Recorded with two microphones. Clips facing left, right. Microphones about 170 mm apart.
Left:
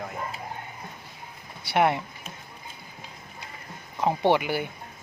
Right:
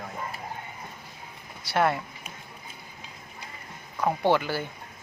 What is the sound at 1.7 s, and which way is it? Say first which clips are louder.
Speech: left 2 dB; 20° left (ahead or behind).